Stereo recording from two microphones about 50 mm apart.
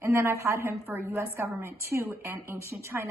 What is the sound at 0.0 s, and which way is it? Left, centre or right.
A woman's voice, right.